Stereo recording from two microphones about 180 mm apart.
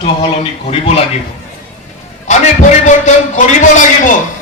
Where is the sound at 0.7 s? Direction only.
35° left (ahead or behind).